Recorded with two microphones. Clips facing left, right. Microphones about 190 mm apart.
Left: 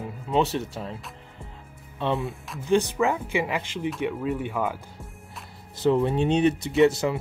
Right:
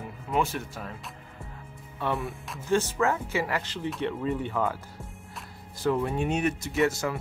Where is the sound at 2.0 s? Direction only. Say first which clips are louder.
Left 3 dB; 20° left (ahead or behind).